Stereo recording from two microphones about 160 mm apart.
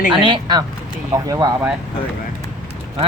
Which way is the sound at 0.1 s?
30° right (ahead or behind).